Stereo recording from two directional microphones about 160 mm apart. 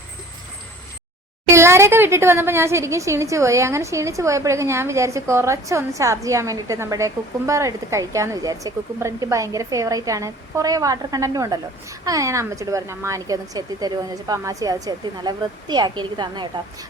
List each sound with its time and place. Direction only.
1.5 s speech: 15° right (ahead or behind)